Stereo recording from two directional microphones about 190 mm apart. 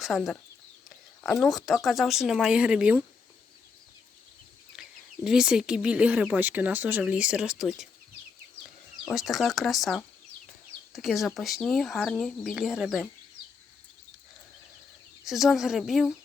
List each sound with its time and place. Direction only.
0.0 s speech: centre (ahead or behind)
1.4 s speech: centre (ahead or behind)
4.8 s speech: 5° right (ahead or behind)
9.0 s speech: centre (ahead or behind)
15.2 s speech: centre (ahead or behind)